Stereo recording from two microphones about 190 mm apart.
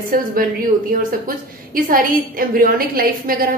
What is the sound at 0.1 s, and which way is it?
A woman's voice, 50° right (ahead or behind).